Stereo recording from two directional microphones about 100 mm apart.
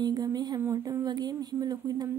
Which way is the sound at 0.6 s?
30° right (ahead or behind).